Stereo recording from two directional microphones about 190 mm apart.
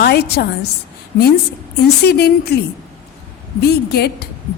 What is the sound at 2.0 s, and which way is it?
Speech, 55° left (ahead or behind).